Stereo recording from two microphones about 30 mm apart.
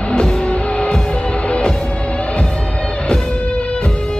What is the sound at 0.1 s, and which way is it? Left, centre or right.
Music, left.